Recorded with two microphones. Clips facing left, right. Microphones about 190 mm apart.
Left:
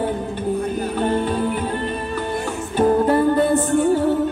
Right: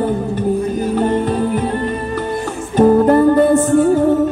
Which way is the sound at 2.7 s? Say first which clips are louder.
Right 6 dB; 45° right (ahead or behind).